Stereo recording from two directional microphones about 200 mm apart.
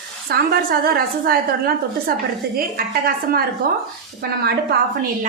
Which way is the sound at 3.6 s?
50° right (ahead or behind).